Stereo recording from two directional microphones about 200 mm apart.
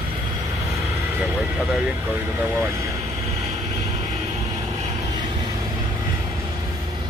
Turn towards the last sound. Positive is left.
turn(degrees=-20)  # may be behind; listen again after turning